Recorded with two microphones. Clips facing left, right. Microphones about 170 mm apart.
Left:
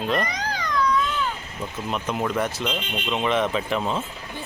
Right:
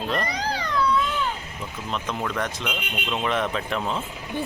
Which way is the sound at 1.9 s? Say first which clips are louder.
Left 3 dB; 10° left (ahead or behind).